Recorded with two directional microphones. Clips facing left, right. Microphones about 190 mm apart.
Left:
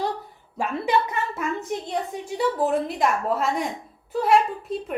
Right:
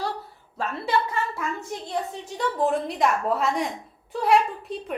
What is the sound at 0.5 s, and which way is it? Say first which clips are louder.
Speech: left 2 dB; 15° left (ahead or behind).